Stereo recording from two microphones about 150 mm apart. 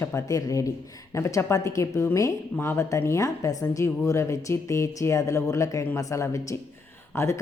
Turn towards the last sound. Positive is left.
turn(degrees=20)  # may be behind; listen again after turning